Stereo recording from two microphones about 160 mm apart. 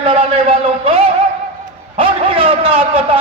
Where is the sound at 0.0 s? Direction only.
40° right (ahead or behind).